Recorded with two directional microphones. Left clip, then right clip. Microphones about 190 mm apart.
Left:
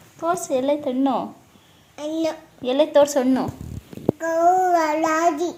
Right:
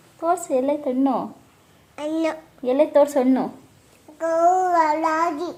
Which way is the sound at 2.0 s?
20° right (ahead or behind).